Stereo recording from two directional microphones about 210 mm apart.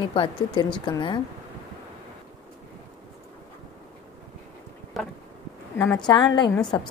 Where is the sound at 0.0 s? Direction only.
25° left (ahead or behind).